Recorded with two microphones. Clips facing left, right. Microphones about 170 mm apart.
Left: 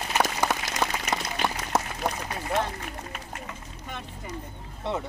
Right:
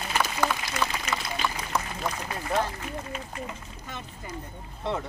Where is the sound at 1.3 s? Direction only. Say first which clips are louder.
Left 3 dB; 65° left (ahead or behind).